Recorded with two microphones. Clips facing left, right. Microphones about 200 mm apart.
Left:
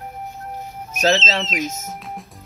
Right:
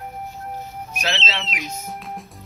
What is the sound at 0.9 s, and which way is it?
Speech, 45° left (ahead or behind).